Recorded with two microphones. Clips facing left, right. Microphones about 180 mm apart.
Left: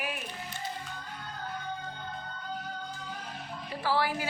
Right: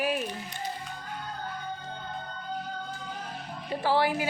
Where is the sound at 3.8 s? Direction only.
20° right (ahead or behind).